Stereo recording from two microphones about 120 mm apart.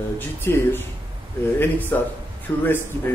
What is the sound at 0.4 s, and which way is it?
A man's voice, 20° left (ahead or behind).